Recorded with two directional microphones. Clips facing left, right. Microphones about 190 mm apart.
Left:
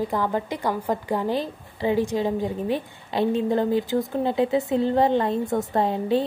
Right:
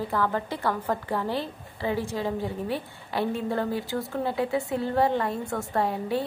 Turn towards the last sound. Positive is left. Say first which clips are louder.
# left 5 dB
turn(degrees=20)  # may be behind; listen again after turning